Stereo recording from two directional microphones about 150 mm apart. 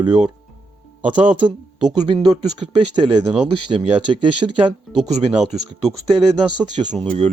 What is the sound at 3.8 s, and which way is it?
Speech, 35° right (ahead or behind).